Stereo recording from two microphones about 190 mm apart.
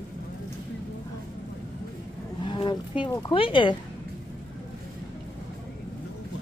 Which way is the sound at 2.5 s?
25° left (ahead or behind).